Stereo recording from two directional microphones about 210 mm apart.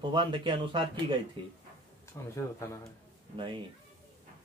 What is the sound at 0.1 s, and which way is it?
Speech, 25° right (ahead or behind).